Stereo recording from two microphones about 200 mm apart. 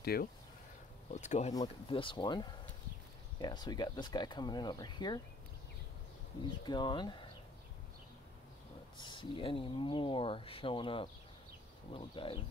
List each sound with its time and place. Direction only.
0.0 s speech: 50° left (ahead or behind)
1.1 s speech: 35° left (ahead or behind)
1.5 s speech: 20° left (ahead or behind)
6.6 s speech: 20° left (ahead or behind)
8.9 s speech: 25° left (ahead or behind)